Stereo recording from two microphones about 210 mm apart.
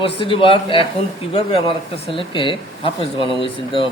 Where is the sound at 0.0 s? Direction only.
25° left (ahead or behind).